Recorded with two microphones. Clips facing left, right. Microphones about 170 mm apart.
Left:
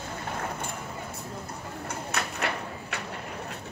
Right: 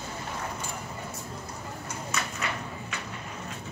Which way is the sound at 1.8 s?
60° left (ahead or behind).